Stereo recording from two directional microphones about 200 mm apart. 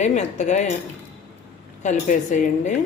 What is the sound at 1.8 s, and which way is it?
Speech, 40° left (ahead or behind).